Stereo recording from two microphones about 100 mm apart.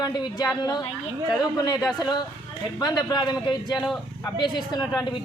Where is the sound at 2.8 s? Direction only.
45° left (ahead or behind).